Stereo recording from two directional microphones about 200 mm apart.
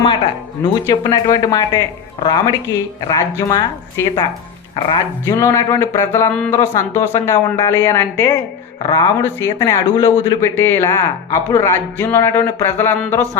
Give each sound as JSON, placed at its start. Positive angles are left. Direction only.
{"t": 0.6, "sound": "speech", "side_deg": 20}